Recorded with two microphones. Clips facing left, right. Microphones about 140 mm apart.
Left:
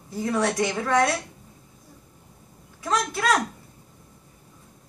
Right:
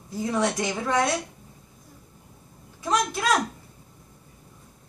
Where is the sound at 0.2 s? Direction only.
15° right (ahead or behind).